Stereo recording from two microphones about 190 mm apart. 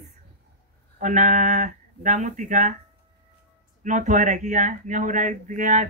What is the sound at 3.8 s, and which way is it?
Speech, 40° right (ahead or behind).